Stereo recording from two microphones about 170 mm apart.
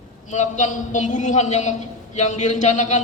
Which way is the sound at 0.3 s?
45° left (ahead or behind).